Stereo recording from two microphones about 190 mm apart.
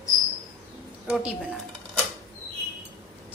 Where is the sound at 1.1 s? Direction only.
5° right (ahead or behind).